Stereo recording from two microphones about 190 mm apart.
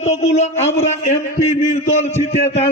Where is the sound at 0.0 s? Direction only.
35° left (ahead or behind).